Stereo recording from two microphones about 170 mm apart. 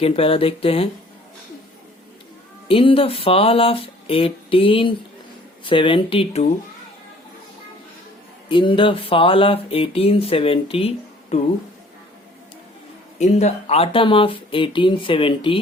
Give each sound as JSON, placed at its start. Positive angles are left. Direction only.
{"t": 0.0, "sound": "speech", "side_deg": 35}
{"t": 2.6, "sound": "speech", "side_deg": 30}
{"t": 8.4, "sound": "speech", "side_deg": 30}
{"t": 13.1, "sound": "speech", "side_deg": 40}